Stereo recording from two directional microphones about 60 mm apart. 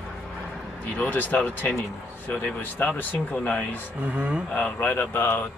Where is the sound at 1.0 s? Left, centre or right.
Left.